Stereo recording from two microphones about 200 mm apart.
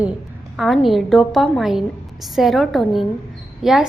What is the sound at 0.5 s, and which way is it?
A woman's voice, centre (ahead or behind).